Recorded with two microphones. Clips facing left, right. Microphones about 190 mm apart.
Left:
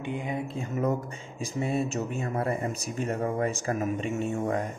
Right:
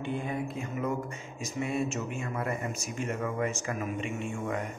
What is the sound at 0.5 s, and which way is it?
Speech, 35° left (ahead or behind).